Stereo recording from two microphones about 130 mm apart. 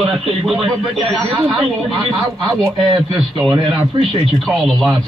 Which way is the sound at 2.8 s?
40° right (ahead or behind).